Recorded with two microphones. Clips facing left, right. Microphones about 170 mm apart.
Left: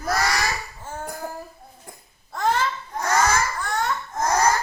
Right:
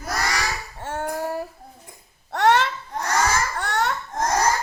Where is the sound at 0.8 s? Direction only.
75° right (ahead or behind).